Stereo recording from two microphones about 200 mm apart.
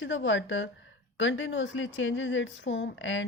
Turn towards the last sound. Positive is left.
turn(degrees=70)  # may be behind; listen again after turning